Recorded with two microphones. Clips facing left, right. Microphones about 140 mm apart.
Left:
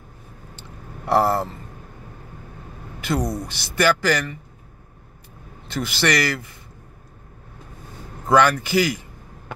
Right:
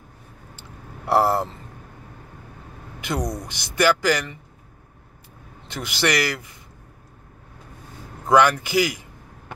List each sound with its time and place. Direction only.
1.0 s speech: 10° right (ahead or behind)
3.0 s a sound: 15° right (ahead or behind)
3.4 s speech: 15° right (ahead or behind)
5.7 s speech: 15° right (ahead or behind)
8.3 s speech: 15° right (ahead or behind)